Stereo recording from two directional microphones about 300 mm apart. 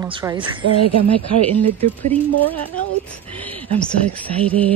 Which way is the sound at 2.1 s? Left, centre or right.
Centre.